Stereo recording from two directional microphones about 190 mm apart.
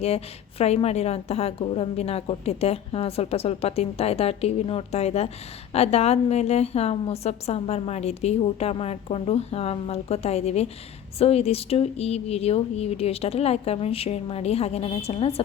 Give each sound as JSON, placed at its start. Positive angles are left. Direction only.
{"t": 0.6, "sound": "a woman's voice", "side_deg": 35}